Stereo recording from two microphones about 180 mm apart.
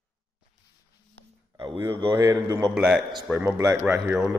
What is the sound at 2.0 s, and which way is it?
Speech, 20° right (ahead or behind).